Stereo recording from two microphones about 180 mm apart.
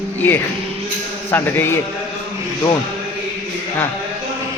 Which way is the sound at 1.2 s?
10° left (ahead or behind).